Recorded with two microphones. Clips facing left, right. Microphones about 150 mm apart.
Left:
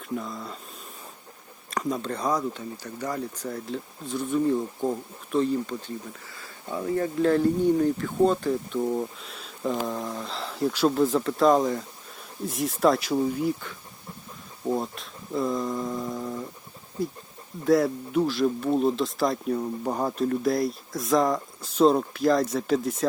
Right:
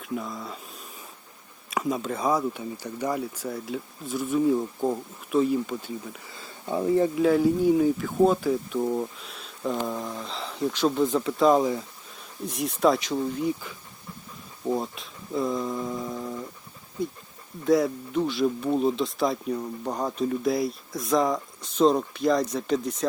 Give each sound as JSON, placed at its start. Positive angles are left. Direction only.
{"t": 0.0, "sound": "speech", "side_deg": 0}
{"t": 1.7, "sound": "speech", "side_deg": -5}
{"t": 6.1, "sound": "speech", "side_deg": -20}
{"t": 7.2, "sound": "speech", "side_deg": -5}